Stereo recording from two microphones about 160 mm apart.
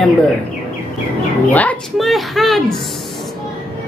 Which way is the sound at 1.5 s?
10° left (ahead or behind).